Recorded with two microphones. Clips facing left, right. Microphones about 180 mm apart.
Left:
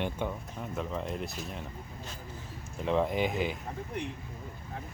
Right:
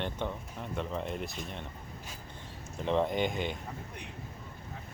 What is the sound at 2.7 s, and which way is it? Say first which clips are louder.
Speech: left 1 dB; centre (ahead or behind).